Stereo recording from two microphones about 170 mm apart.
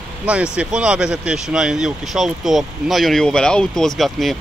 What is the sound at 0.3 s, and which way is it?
Speech, 5° right (ahead or behind).